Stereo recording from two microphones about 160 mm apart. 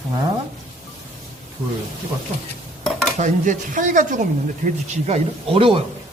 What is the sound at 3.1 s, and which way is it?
Speech, 50° right (ahead or behind).